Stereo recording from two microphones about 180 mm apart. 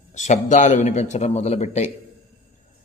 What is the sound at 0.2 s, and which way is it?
A man's voice, 45° left (ahead or behind).